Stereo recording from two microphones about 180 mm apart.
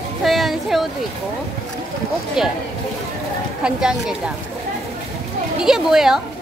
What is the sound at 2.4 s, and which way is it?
Speech, 5° right (ahead or behind).